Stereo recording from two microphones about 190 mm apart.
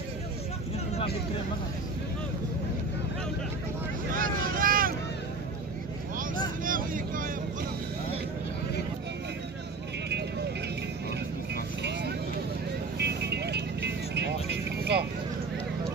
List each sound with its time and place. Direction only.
4.1 s vehicle: 50° right (ahead or behind)
6.1 s vehicle: 45° right (ahead or behind)
13.0 s vehicle: 60° right (ahead or behind)